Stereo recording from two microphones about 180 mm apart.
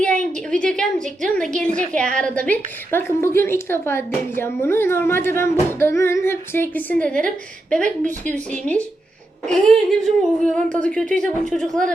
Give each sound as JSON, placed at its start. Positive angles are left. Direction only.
{"t": 0.6, "sound": "a sound", "side_deg": 5}
{"t": 1.2, "sound": "a woman's voice", "side_deg": 5}
{"t": 7.9, "sound": "speech", "side_deg": -45}
{"t": 8.3, "sound": "a woman's voice", "side_deg": 5}